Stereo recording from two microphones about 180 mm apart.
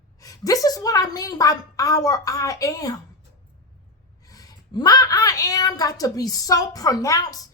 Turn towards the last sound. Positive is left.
turn(degrees=20)  # may be behind; listen again after turning